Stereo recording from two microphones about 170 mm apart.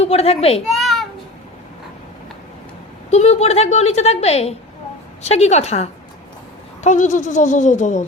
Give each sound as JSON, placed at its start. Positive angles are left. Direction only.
{"t": 0.0, "sound": "a woman's voice", "side_deg": 35}
{"t": 0.7, "sound": "a sound", "side_deg": 0}
{"t": 3.1, "sound": "a woman's voice", "side_deg": 40}